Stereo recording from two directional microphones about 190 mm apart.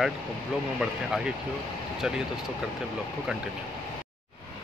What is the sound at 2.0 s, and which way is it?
Speech, 5° right (ahead or behind).